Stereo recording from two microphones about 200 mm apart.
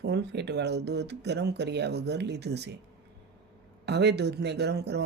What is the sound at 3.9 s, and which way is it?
Speech, 55° right (ahead or behind).